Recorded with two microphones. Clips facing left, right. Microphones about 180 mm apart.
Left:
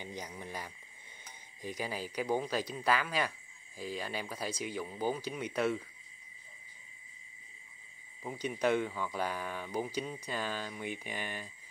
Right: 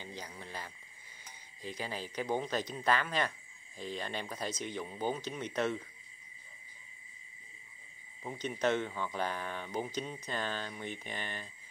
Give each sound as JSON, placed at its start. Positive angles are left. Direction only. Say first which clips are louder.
{"t": 0.0, "sound": "a sound", "louder": "left 2 dB", "side_deg": 15}
{"t": 0.4, "sound": "speech", "louder": "left 2 dB", "side_deg": 15}
{"t": 8.2, "sound": "speech", "louder": "left 1 dB", "side_deg": 5}